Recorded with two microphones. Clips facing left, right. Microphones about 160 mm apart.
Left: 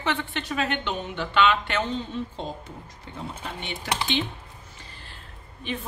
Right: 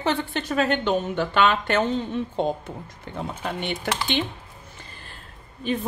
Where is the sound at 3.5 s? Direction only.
60° right (ahead or behind).